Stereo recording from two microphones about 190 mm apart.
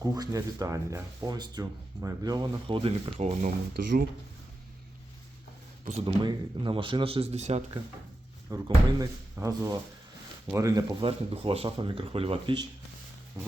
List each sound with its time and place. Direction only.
0.0 s speech: 20° right (ahead or behind); by 3.5 s 35° right (ahead or behind)
3.8 s speech: 50° right (ahead or behind)
6.1 s speech: 25° right (ahead or behind)
8.4 s speech: 20° right (ahead or behind)
11.0 s speech: 30° right (ahead or behind)